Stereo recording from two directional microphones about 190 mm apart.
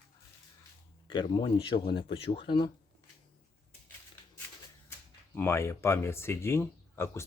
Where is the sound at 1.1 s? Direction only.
25° left (ahead or behind).